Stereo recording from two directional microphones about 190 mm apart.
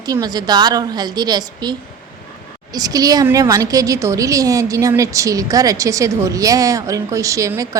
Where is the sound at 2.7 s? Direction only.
20° right (ahead or behind).